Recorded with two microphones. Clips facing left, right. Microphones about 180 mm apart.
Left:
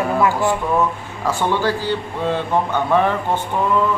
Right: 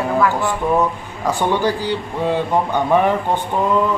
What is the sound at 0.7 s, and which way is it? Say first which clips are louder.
Speech: right 1 dB; 15° right (ahead or behind).